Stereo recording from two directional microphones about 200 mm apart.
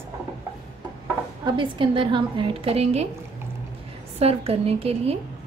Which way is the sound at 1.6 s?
25° right (ahead or behind).